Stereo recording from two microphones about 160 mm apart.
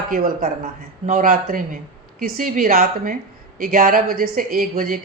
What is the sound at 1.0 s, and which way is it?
Speech, 55° right (ahead or behind).